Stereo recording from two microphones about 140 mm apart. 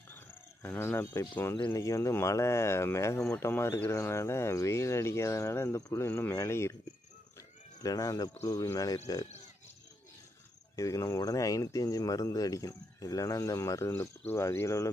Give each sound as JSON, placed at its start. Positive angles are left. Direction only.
{"t": 0.6, "sound": "speech", "side_deg": 15}
{"t": 7.8, "sound": "speech", "side_deg": 25}
{"t": 10.8, "sound": "speech", "side_deg": 25}